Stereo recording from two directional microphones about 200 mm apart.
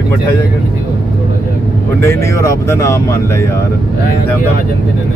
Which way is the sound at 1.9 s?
15° left (ahead or behind).